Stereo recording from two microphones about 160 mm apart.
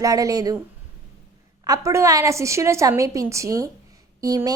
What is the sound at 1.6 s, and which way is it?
A woman's voice, 20° right (ahead or behind).